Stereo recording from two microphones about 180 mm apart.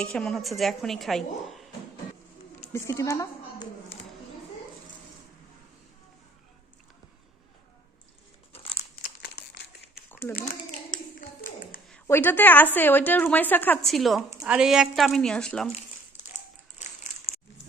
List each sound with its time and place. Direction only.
0.0 s a woman's voice: 5° left (ahead or behind)
2.7 s a woman's voice: 15° left (ahead or behind)
10.4 s a sound: 50° left (ahead or behind)
12.0 s a woman's voice: 10° left (ahead or behind)
16.7 s crumpling: 40° left (ahead or behind)